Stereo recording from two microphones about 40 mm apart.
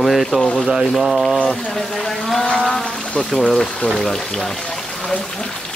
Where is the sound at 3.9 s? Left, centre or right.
Centre.